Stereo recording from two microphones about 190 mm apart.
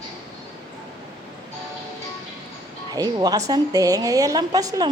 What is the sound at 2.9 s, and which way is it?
A woman's voice, 20° right (ahead or behind).